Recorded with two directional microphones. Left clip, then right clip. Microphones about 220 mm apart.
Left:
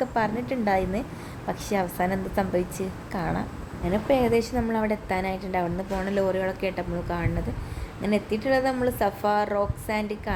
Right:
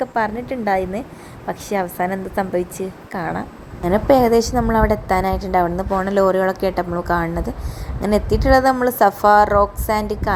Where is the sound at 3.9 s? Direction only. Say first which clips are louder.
Right 9 dB; 25° right (ahead or behind).